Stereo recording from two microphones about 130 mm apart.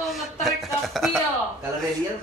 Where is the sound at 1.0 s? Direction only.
Centre (ahead or behind).